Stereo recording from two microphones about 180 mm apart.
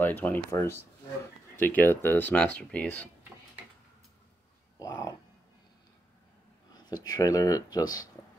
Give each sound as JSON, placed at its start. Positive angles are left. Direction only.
{"t": 0.0, "sound": "speech", "side_deg": 10}
{"t": 4.7, "sound": "cat", "side_deg": 20}
{"t": 6.7, "sound": "speech", "side_deg": 20}